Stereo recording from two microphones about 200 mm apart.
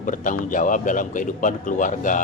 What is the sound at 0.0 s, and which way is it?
A man's voice, 40° left (ahead or behind).